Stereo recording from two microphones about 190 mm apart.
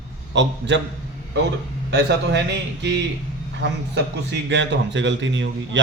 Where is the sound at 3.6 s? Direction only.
65° right (ahead or behind).